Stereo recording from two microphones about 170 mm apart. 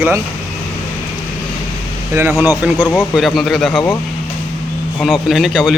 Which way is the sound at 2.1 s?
15° right (ahead or behind).